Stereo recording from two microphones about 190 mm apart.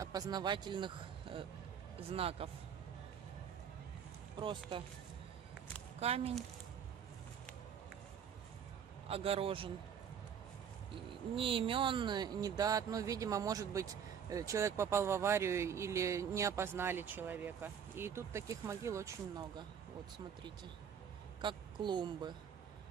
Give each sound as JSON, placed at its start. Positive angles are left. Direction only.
{"t": 0.0, "sound": "a man's voice", "side_deg": -20}
{"t": 4.4, "sound": "speech", "side_deg": -25}
{"t": 5.9, "sound": "speech", "side_deg": -30}
{"t": 9.0, "sound": "speech", "side_deg": -30}
{"t": 11.3, "sound": "speech", "side_deg": -30}
{"t": 21.4, "sound": "a woman's voice", "side_deg": -25}